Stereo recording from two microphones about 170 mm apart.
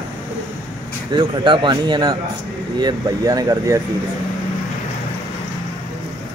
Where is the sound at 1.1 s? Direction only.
30° right (ahead or behind).